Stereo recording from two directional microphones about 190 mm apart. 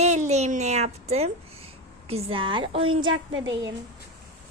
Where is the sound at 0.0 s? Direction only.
35° right (ahead or behind).